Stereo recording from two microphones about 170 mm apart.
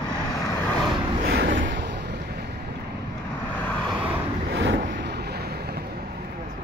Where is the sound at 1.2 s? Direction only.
80° right.